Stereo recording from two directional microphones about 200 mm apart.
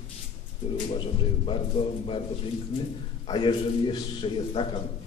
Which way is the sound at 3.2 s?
25° left (ahead or behind).